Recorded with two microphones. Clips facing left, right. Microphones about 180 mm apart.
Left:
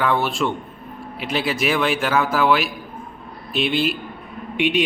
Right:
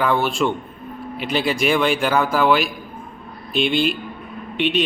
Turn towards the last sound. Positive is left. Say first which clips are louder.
# even
turn(degrees=10)  # may be behind; listen again after turning